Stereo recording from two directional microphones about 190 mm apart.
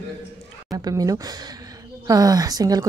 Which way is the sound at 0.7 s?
20° right (ahead or behind).